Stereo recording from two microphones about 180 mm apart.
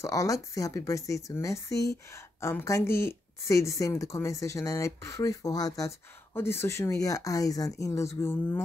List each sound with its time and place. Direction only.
0.0 s a woman's voice: 20° left (ahead or behind)